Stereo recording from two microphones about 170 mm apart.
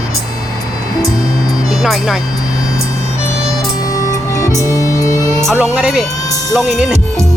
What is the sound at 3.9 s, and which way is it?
Music, 20° left (ahead or behind).